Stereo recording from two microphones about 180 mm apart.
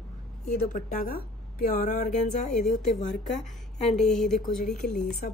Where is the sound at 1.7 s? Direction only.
45° left (ahead or behind).